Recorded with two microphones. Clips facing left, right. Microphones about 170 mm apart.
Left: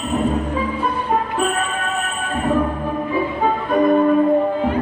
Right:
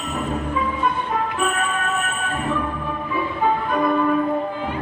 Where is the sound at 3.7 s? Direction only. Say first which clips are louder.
Left 9 dB; 35° left (ahead or behind).